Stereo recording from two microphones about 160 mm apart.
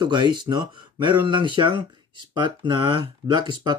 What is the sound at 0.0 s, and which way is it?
Speech, 30° right (ahead or behind).